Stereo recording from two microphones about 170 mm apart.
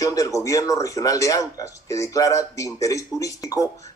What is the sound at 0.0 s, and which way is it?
Speech, 20° left (ahead or behind).